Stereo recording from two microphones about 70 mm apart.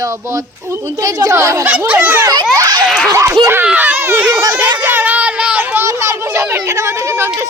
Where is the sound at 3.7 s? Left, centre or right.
Right.